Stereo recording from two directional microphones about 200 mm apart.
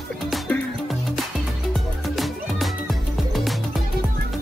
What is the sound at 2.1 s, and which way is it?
Music, centre (ahead or behind).